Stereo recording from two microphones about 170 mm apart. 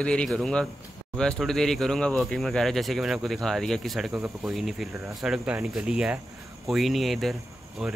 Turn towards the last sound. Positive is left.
turn(degrees=0)  # may be behind; listen again after turning